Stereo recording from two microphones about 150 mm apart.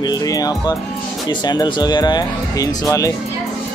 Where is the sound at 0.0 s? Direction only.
25° left (ahead or behind).